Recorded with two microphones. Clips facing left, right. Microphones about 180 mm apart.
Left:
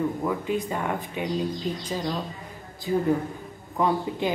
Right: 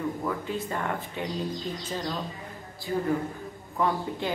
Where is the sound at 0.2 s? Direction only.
15° left (ahead or behind).